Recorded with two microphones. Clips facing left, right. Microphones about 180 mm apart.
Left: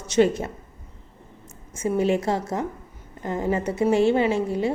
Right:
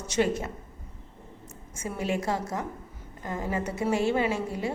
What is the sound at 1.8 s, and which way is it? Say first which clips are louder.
A woman's voice: left 8 dB; 25° left (ahead or behind).